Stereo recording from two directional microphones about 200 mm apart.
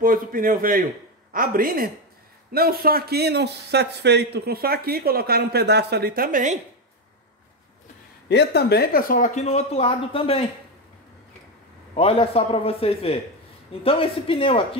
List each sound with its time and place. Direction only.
0.0 s a man's voice: 45° right (ahead or behind)
8.3 s speech: 55° left (ahead or behind); by 10.5 s 30° left (ahead or behind)
11.9 s a man's voice: 30° left (ahead or behind)